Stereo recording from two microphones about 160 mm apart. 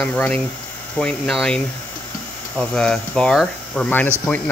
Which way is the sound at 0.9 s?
5° left (ahead or behind).